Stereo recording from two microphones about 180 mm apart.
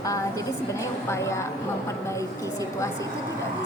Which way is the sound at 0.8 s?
15° left (ahead or behind).